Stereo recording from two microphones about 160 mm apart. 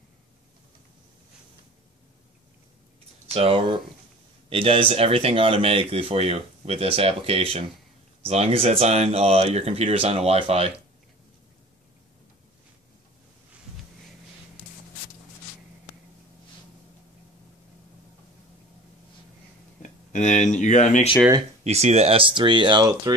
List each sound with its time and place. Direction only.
3.3 s speech: 35° right (ahead or behind)
19.8 s speech: 50° left (ahead or behind)
21.6 s speech: 40° right (ahead or behind); by 23.1 s 25° right (ahead or behind)